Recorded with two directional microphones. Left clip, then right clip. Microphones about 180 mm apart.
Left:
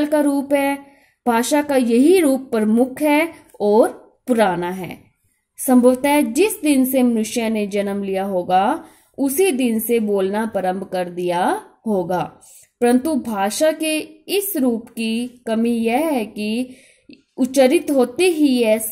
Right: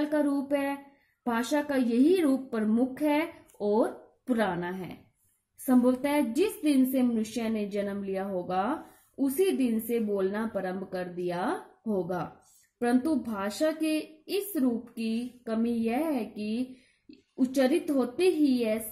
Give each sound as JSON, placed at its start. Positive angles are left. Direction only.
{"t": 0.0, "sound": "a woman's voice", "side_deg": 45}